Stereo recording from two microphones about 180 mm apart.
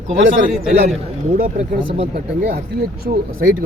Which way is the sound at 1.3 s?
50° right (ahead or behind).